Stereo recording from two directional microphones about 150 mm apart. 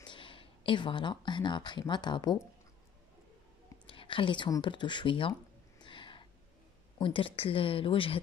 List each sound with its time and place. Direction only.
0.0 s speech: 35° left (ahead or behind)
3.8 s speech: 35° left (ahead or behind)
5.8 s a sound: 35° left (ahead or behind)
7.0 s speech: 35° left (ahead or behind)